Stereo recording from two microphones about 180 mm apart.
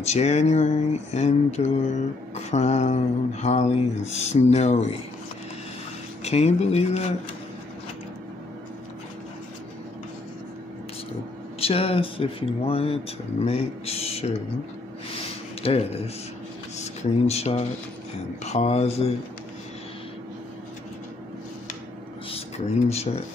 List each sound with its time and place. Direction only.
0.0 s speech: 40° left (ahead or behind)
6.2 s speech: 35° left (ahead or behind)
11.6 s speech: 35° left (ahead or behind)
15.6 s speech: 35° left (ahead or behind)
22.3 s speech: 35° left (ahead or behind)